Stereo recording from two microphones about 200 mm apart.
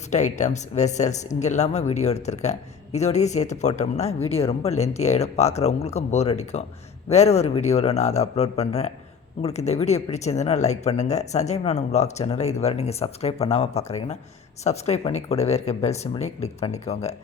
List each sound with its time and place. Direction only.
0.1 s speech: 35° left (ahead or behind)